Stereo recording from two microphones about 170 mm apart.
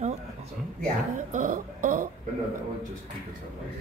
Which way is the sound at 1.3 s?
50° right (ahead or behind).